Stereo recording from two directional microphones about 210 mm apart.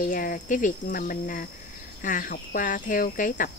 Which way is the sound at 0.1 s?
40° left (ahead or behind).